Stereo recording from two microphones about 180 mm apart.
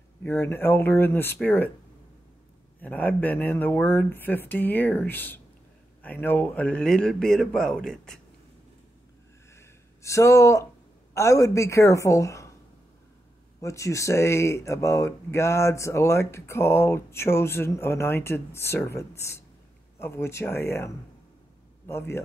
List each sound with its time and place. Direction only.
0.2 s speech: 15° left (ahead or behind)
2.8 s speech: 10° left (ahead or behind)
9.6 s a sound: 15° left (ahead or behind)
11.1 s speech: 15° left (ahead or behind)
13.6 s speech: 15° left (ahead or behind)